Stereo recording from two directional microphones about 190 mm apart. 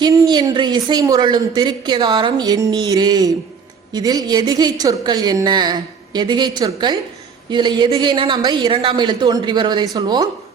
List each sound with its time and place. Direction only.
0.0 s speech: 20° right (ahead or behind)